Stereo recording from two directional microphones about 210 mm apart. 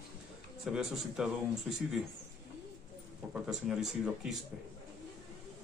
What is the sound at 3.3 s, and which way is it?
Speech, 5° right (ahead or behind).